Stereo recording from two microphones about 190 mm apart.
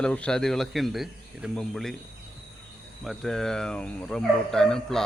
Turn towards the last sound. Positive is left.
turn(degrees=5)  # may be behind; listen again after turning